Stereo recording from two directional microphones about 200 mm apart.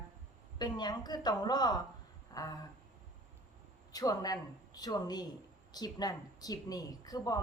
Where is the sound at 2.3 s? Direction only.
20° left (ahead or behind).